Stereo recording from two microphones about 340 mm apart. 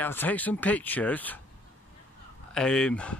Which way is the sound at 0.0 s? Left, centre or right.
Centre.